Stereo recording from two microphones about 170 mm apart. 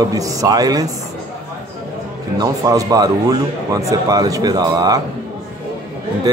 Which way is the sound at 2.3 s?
20° right (ahead or behind).